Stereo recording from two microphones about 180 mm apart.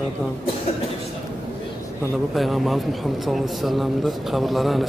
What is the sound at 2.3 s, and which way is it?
Speech, centre (ahead or behind).